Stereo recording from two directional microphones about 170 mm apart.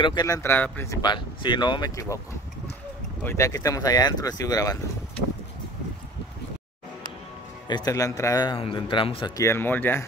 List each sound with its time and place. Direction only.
0.0 s speech: 25° left (ahead or behind)
1.0 s a man's voice: 25° left (ahead or behind)
3.3 s a man's voice: 20° left (ahead or behind)
7.6 s a man's voice: 25° left (ahead or behind)
9.4 s speech: 15° left (ahead or behind)